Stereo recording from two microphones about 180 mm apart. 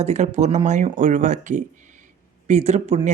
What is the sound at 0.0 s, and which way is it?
A woman's voice, 40° right (ahead or behind).